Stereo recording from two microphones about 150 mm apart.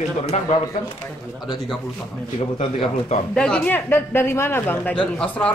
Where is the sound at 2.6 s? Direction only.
40° left (ahead or behind).